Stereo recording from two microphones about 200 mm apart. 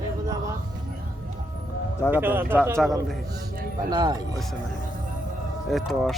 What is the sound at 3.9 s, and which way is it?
Speech, 20° right (ahead or behind).